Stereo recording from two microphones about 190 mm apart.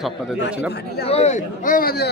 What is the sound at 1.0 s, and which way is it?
A man's voice, 35° left (ahead or behind).